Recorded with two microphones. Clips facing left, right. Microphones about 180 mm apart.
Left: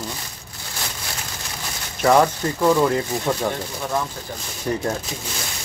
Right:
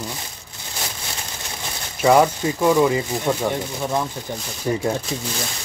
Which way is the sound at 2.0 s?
10° right (ahead or behind).